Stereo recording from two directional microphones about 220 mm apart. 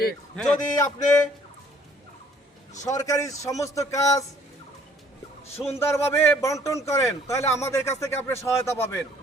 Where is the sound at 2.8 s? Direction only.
15° left (ahead or behind).